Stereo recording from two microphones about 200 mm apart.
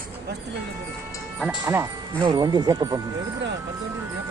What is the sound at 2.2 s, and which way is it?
Speech, 20° right (ahead or behind).